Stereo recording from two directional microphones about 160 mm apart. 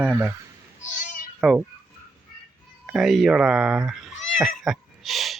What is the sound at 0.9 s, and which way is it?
Meow, 55° left (ahead or behind).